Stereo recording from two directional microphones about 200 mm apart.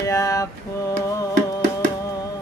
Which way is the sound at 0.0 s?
15° left (ahead or behind).